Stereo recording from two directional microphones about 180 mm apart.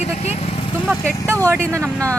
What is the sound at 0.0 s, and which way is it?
Vehicle, 40° left (ahead or behind).